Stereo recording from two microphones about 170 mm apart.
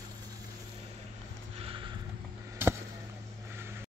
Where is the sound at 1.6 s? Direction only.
30° right (ahead or behind).